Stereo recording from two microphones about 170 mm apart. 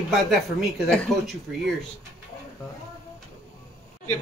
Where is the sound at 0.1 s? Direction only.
Centre (ahead or behind).